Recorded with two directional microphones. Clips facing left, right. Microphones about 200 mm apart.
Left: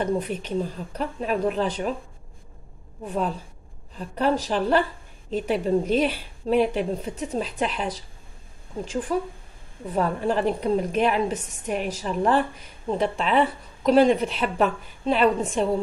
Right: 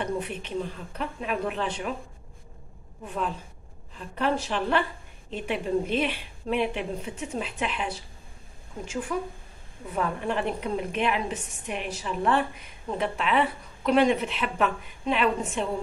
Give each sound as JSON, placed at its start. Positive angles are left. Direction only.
{"t": 0.0, "sound": "a woman's voice", "side_deg": 40}
{"t": 3.1, "sound": "a woman's voice", "side_deg": 40}